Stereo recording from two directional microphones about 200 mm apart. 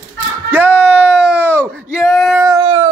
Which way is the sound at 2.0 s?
Centre (ahead or behind).